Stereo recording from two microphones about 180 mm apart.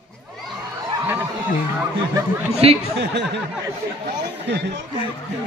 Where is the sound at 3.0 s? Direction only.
70° right (ahead or behind).